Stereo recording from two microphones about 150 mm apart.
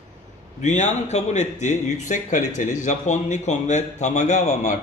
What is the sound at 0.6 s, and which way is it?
A man's voice, 50° left (ahead or behind).